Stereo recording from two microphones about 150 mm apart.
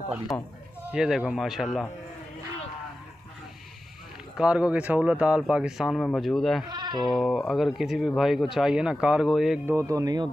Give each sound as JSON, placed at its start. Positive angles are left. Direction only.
{"t": 0.3, "sound": "speech", "side_deg": 10}
{"t": 0.8, "sound": "speech", "side_deg": -5}
{"t": 4.4, "sound": "speech", "side_deg": -5}
{"t": 6.7, "sound": "speech", "side_deg": -30}
{"t": 7.1, "sound": "speech", "side_deg": 0}
{"t": 9.7, "sound": "speech", "side_deg": -20}